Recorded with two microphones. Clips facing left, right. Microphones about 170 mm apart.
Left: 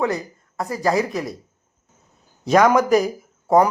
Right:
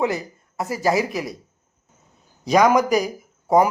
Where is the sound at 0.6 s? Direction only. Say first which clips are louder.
Even; 20° right (ahead or behind).